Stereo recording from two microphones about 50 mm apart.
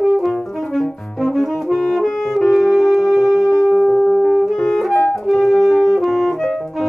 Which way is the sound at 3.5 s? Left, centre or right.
Left.